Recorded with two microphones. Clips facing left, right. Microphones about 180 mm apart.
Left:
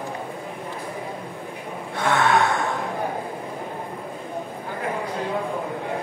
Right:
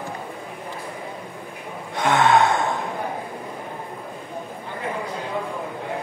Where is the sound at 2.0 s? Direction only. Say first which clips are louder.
Right 3 dB; 20° right (ahead or behind).